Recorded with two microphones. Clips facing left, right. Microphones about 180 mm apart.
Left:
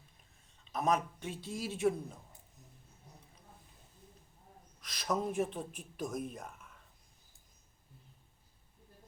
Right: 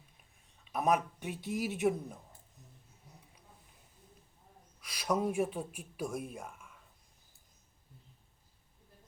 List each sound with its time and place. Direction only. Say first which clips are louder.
0.6 s speech: right 2 dB; 10° right (ahead or behind)
4.8 s speech: right 3 dB; 10° right (ahead or behind)